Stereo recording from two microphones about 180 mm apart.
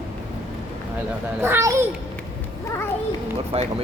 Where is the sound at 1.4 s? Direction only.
15° right (ahead or behind).